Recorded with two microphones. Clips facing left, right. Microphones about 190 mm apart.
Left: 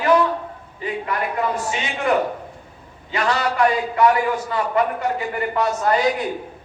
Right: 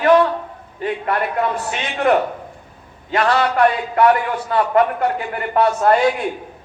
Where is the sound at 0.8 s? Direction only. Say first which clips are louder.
Right 4 dB; 55° right (ahead or behind).